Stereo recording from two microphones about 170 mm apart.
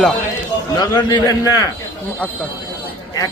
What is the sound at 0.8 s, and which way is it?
Speech, 25° left (ahead or behind).